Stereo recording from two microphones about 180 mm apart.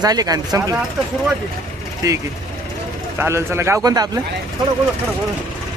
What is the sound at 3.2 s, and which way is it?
Speech, 15° right (ahead or behind).